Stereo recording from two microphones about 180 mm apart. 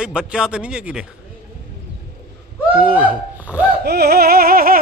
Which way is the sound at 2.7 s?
5° right (ahead or behind).